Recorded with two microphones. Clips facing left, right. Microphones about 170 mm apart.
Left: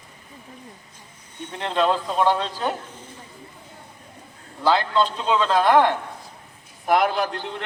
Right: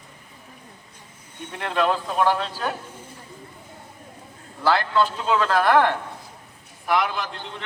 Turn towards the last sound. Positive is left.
turn(degrees=60)  # may be behind; listen again after turning